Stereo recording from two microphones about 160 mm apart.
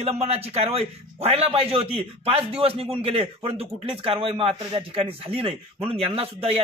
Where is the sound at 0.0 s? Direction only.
40° right (ahead or behind).